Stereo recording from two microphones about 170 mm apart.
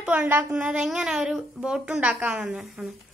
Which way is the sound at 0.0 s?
10° right (ahead or behind).